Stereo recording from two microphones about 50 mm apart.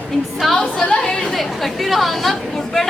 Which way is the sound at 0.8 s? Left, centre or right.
Centre.